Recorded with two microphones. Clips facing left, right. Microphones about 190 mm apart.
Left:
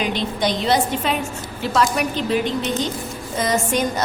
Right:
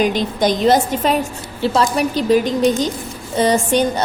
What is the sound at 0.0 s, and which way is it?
A woman's voice, 45° right (ahead or behind).